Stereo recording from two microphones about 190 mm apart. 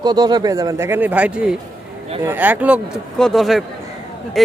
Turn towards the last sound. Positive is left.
turn(degrees=0)  # may be behind; listen again after turning